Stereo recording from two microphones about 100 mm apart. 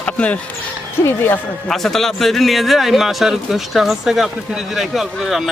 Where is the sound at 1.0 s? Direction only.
25° left (ahead or behind).